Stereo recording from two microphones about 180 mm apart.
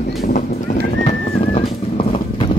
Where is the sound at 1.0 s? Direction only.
35° left (ahead or behind).